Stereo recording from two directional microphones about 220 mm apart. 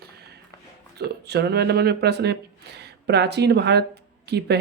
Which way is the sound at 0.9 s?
50° right (ahead or behind).